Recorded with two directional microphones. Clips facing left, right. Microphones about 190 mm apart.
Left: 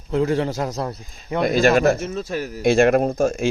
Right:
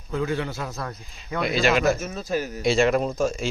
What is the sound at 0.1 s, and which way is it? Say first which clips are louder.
A man's voice: left 6 dB; 35° left (ahead or behind).